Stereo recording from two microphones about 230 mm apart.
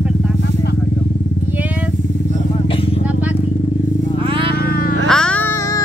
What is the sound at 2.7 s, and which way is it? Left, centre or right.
Vehicle, left.